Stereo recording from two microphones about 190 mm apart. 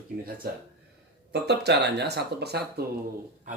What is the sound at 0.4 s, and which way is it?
Speech, 50° right (ahead or behind).